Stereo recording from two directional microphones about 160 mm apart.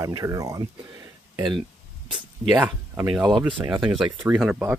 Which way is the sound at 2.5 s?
10° right (ahead or behind).